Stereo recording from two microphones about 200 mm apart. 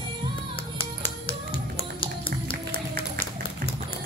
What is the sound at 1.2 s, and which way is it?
Music, 25° left (ahead or behind).